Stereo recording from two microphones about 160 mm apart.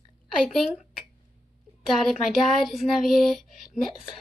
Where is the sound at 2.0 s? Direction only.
Centre (ahead or behind).